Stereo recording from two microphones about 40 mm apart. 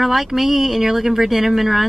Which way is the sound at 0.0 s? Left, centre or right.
Centre.